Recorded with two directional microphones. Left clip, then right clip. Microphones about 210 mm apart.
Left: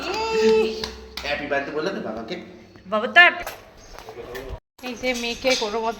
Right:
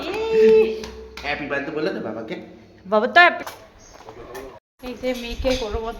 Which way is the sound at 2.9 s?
40° right (ahead or behind).